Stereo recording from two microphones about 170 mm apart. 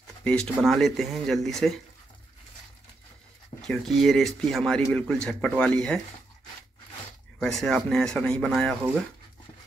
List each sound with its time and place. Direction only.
0.2 s speech: 5° left (ahead or behind)
3.6 s speech: 5° left (ahead or behind)
7.3 s speech: 5° left (ahead or behind)